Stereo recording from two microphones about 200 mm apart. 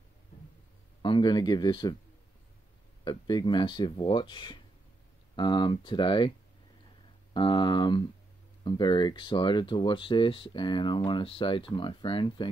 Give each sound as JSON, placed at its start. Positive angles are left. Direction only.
{"t": 1.0, "sound": "speech", "side_deg": 25}
{"t": 3.0, "sound": "speech", "side_deg": 20}
{"t": 7.3, "sound": "speech", "side_deg": 25}